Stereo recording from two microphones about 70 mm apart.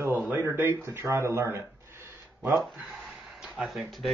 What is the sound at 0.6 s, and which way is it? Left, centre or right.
Speech, right.